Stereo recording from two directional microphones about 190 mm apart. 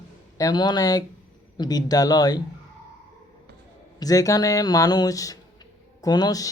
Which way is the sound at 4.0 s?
20° left (ahead or behind).